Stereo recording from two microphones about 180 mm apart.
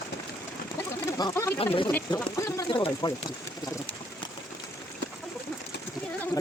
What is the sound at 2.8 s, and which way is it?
Speech, 30° left (ahead or behind).